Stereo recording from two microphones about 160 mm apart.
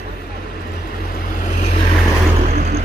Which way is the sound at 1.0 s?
70° left (ahead or behind).